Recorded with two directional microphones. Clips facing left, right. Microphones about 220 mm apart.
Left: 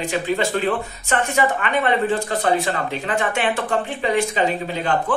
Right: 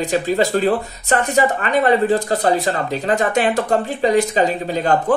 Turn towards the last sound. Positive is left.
turn(degrees=-40)  # may be behind; listen again after turning